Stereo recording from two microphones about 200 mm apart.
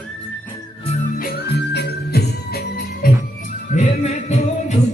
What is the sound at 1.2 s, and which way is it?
Music, 55° left (ahead or behind).